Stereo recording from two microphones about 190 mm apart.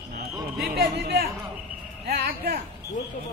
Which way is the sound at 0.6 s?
55° right (ahead or behind).